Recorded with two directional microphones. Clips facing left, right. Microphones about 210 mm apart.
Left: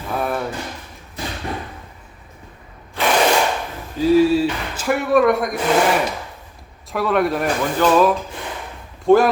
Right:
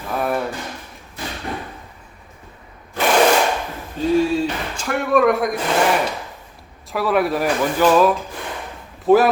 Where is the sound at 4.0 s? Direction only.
5° left (ahead or behind).